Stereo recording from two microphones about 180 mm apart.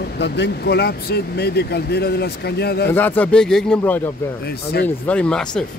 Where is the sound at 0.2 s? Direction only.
70° left (ahead or behind).